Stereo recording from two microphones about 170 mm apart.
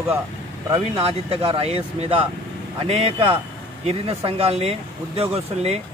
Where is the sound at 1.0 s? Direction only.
35° right (ahead or behind).